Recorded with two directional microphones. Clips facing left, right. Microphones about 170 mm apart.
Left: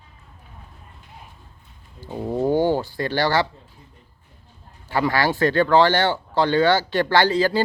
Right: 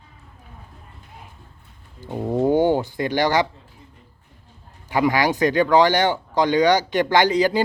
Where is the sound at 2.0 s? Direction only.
15° right (ahead or behind).